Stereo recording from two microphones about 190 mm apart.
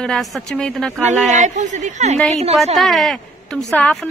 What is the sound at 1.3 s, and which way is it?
Speech, 40° right (ahead or behind).